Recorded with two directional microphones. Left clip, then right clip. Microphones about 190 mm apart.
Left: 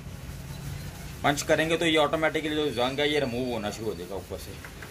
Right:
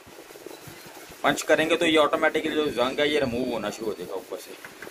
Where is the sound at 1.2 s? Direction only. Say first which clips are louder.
Right 3 dB; 35° right (ahead or behind).